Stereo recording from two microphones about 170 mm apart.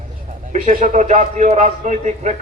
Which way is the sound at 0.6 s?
45° right (ahead or behind).